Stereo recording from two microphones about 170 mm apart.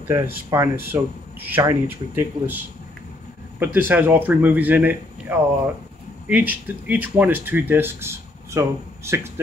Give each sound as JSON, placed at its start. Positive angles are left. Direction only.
{"t": 0.1, "sound": "speech", "side_deg": -15}